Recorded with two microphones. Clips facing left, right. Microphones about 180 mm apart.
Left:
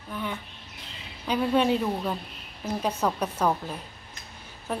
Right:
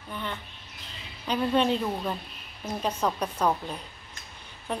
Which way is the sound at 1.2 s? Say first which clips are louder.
Left 1 dB; 10° left (ahead or behind).